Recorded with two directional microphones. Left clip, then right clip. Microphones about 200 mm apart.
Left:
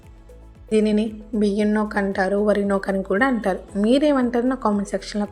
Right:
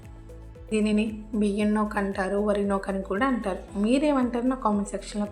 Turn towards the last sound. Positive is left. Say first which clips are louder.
# left 5 dB
turn(degrees=30)  # may be behind; listen again after turning